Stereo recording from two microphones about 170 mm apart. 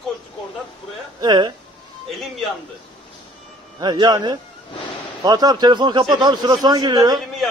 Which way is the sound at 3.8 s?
25° right (ahead or behind).